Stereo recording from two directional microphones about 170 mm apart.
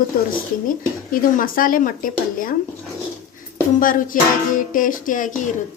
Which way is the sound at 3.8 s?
55° left (ahead or behind).